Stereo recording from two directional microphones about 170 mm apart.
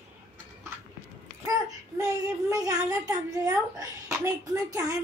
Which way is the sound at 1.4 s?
20° right (ahead or behind).